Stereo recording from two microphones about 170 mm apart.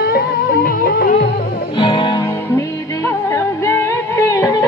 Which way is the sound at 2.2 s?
15° left (ahead or behind).